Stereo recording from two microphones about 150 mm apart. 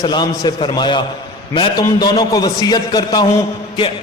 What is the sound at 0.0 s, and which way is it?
A man's voice, 30° left (ahead or behind).